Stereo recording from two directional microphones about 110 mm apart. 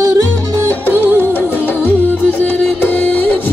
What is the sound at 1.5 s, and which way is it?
Music, 15° left (ahead or behind).